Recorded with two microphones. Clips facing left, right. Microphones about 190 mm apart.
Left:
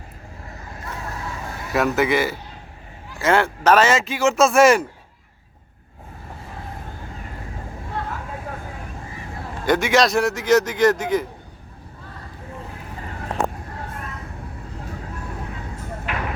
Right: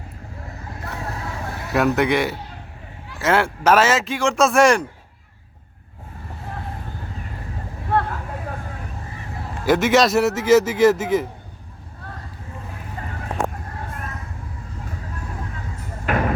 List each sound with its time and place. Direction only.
1.7 s speech: centre (ahead or behind)
7.9 s vehicle: 65° right (ahead or behind)
9.6 s speech: centre (ahead or behind)
16.1 s music: 45° right (ahead or behind)